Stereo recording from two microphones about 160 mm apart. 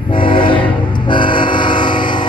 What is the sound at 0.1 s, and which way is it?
Train, 30° left (ahead or behind).